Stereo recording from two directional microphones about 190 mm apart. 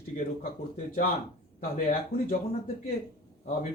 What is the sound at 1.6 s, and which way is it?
Speech, 50° left (ahead or behind).